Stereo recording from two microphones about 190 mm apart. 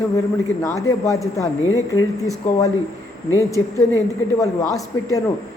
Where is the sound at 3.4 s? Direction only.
15° left (ahead or behind).